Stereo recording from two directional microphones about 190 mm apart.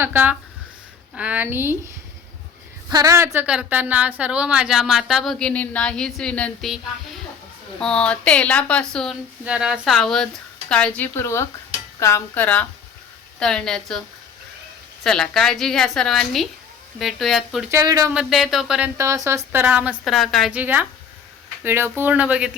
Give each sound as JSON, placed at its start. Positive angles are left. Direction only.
{"t": 0.0, "sound": "a woman's voice", "side_deg": -10}
{"t": 2.9, "sound": "a woman's voice", "side_deg": -20}
{"t": 3.3, "sound": "speech", "side_deg": -5}
{"t": 7.8, "sound": "speech", "side_deg": 5}
{"t": 15.0, "sound": "speech", "side_deg": 5}
{"t": 17.7, "sound": "a woman's voice", "side_deg": -20}
{"t": 18.1, "sound": "speech", "side_deg": -5}
{"t": 18.9, "sound": "a woman's voice", "side_deg": -15}